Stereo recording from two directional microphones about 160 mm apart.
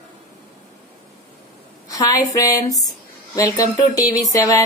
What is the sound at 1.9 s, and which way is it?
A woman's voice, 20° left (ahead or behind).